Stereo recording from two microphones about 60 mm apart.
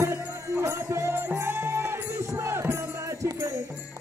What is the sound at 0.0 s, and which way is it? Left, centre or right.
Music, right.